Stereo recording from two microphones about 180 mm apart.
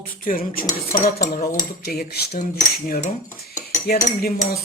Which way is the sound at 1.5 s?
55° left (ahead or behind).